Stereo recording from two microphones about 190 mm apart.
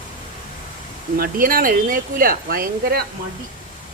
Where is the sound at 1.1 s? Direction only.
50° right (ahead or behind).